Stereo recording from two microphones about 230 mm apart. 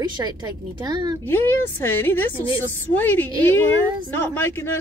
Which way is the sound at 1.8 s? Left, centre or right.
Centre.